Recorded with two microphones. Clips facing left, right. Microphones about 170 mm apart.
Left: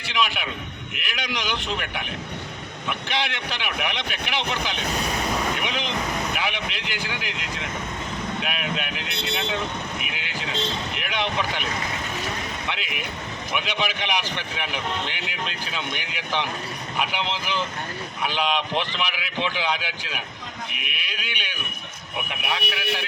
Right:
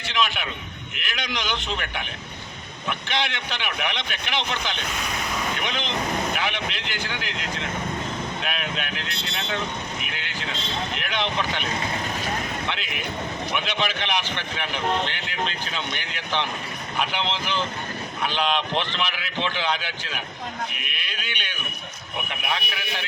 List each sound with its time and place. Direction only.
0.1 s speech: 5° left (ahead or behind)
3.1 s speech: 5° left (ahead or behind)
9.0 s speech: 65° left (ahead or behind)
9.3 s speech: centre (ahead or behind)
12.6 s speech: 5° left (ahead or behind)